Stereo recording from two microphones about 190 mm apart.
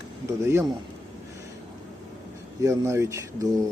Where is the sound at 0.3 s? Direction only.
15° right (ahead or behind).